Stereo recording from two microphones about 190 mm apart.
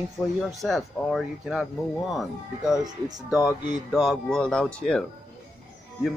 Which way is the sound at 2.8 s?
20° right (ahead or behind).